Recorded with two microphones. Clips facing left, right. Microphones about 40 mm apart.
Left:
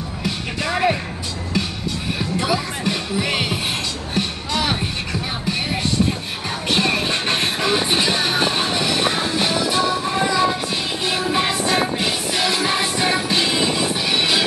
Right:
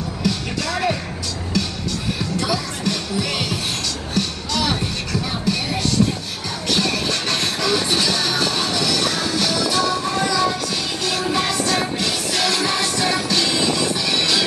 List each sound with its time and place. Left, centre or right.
0.2 s music: left
2.1 s music: left
6.7 s music: left